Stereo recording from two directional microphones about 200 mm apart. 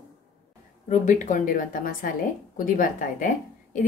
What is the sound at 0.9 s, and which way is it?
A woman's voice, 40° left (ahead or behind).